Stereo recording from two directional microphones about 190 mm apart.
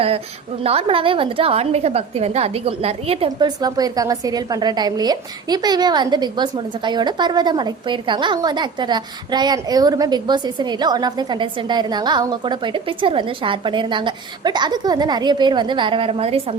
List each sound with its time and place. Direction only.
0.6 s a woman's voice: 30° right (ahead or behind)